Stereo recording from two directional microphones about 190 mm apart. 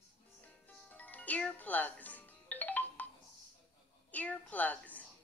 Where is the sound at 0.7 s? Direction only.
10° left (ahead or behind).